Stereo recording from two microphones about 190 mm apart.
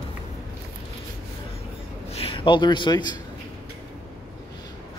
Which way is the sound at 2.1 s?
30° left (ahead or behind).